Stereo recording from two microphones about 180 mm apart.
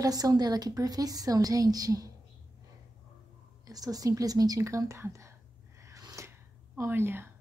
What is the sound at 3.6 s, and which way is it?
A woman's voice, 20° right (ahead or behind).